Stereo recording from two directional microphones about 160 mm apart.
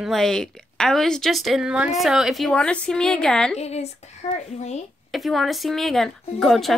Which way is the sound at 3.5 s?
40° left (ahead or behind).